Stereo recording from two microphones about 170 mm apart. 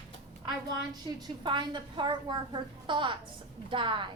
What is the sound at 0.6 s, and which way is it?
A woman's voice, 25° right (ahead or behind).